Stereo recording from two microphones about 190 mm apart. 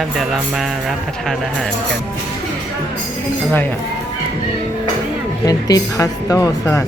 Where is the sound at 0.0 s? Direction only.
Centre (ahead or behind).